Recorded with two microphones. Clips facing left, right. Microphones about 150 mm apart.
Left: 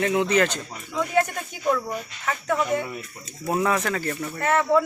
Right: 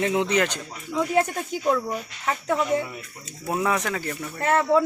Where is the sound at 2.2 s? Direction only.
30° right (ahead or behind).